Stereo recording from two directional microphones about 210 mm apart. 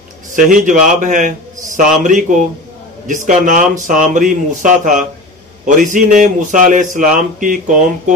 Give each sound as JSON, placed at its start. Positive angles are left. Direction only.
{"t": 0.3, "sound": "a man's voice", "side_deg": -40}